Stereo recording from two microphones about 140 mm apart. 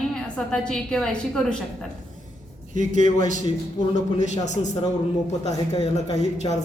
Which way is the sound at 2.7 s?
65° right (ahead or behind).